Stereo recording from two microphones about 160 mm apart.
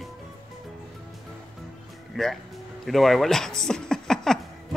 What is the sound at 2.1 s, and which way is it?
Speech, 5° right (ahead or behind).